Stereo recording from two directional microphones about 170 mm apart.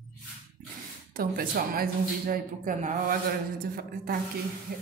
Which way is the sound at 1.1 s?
60° right (ahead or behind).